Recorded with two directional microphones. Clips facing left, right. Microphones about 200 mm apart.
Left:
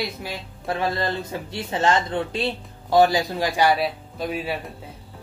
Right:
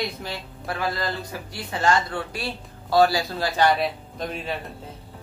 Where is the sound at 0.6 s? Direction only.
25° left (ahead or behind); by 4.7 s 5° left (ahead or behind).